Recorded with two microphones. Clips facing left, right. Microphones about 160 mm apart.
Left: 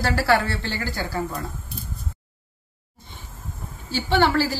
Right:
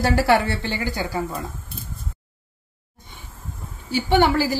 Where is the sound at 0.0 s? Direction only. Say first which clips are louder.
Right 3 dB; 20° right (ahead or behind).